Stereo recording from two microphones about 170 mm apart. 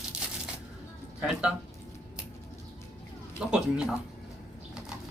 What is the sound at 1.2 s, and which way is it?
Speech, 5° right (ahead or behind).